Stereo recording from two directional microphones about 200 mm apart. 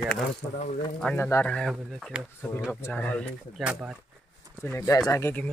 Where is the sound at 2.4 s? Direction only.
10° left (ahead or behind).